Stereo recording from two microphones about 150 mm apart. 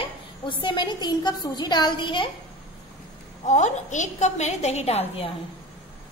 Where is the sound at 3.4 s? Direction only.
50° left (ahead or behind).